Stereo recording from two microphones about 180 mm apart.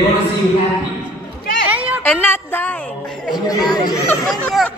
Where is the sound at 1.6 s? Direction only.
10° right (ahead or behind).